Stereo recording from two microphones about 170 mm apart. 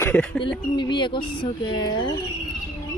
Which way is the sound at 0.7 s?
25° left (ahead or behind).